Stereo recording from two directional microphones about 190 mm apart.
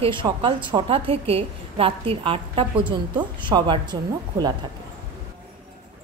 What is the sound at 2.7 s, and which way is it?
Speech, 10° right (ahead or behind).